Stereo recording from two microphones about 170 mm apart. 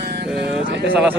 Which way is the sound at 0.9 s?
10° right (ahead or behind).